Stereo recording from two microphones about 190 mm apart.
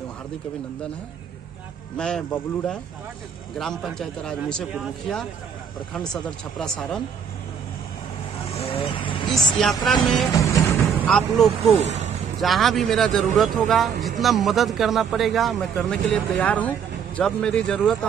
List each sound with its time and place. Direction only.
2.0 s speech: 5° left (ahead or behind)
6.6 s speech: 5° left (ahead or behind)
8.5 s vehicle: 30° left (ahead or behind)
9.6 s speech: centre (ahead or behind)
10.3 s music: 15° left (ahead or behind)
11.1 s speech: centre (ahead or behind)
11.8 s speech: 35° right (ahead or behind)
12.4 s speech: centre (ahead or behind)